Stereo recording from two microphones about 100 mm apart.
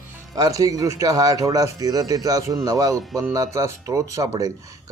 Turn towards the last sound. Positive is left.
turn(degrees=-35)  # may be behind; listen again after turning